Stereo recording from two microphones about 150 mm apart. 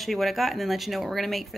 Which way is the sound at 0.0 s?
Centre (ahead or behind).